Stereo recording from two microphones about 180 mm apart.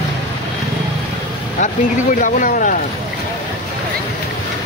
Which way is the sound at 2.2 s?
50° left (ahead or behind).